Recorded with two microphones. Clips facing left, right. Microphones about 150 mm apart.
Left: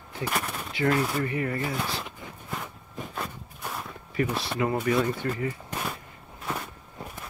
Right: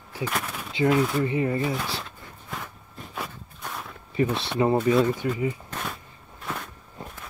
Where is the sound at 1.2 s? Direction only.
20° right (ahead or behind).